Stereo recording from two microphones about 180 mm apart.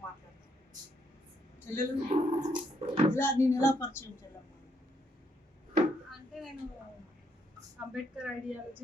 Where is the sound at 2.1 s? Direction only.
40° right (ahead or behind).